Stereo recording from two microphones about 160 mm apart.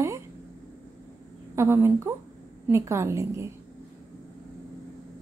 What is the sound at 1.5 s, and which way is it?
A woman's voice, 15° right (ahead or behind).